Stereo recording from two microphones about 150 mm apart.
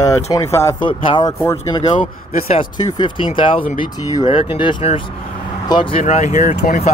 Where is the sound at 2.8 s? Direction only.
25° left (ahead or behind).